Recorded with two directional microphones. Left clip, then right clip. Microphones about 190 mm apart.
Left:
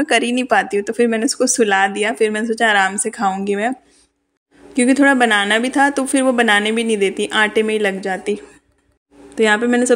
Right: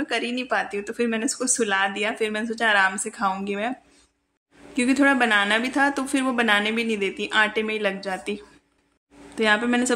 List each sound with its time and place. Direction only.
0.0 s speech: 40° left (ahead or behind)
4.7 s speech: 25° left (ahead or behind)